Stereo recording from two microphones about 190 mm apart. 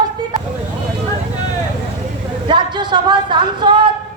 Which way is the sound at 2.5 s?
25° right (ahead or behind).